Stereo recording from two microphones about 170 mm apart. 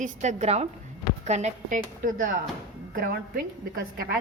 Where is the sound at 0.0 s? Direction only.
45° right (ahead or behind).